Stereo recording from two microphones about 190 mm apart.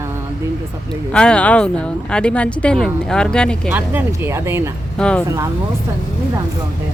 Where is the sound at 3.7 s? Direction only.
10° right (ahead or behind).